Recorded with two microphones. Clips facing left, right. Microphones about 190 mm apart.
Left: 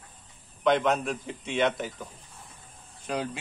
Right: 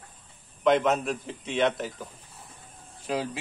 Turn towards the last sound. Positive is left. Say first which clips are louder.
# right 1 dB
turn(degrees=-5)  # may be behind; listen again after turning